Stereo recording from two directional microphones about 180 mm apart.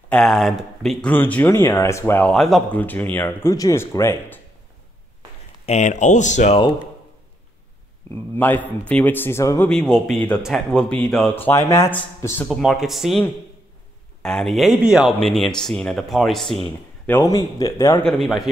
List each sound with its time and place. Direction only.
0.1 s speech: centre (ahead or behind)
5.7 s speech: 40° left (ahead or behind)
8.4 s speech: 10° left (ahead or behind)
9.7 s speech: 5° left (ahead or behind)
12.4 s speech: centre (ahead or behind)
14.2 s speech: centre (ahead or behind)
17.0 s speech: 15° left (ahead or behind)
18.0 s speech: centre (ahead or behind)